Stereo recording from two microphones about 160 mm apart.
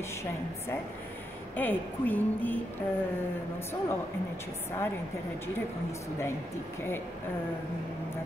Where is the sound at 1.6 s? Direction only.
10° left (ahead or behind).